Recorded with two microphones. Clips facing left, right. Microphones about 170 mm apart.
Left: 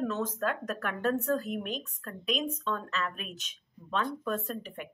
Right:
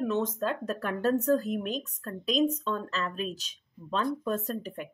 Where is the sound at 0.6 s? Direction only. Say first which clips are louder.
Right 3 dB; 30° right (ahead or behind).